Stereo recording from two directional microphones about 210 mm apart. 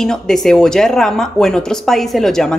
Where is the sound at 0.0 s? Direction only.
Centre (ahead or behind).